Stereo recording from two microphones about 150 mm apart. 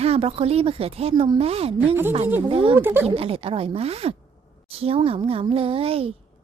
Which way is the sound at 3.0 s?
40° right (ahead or behind).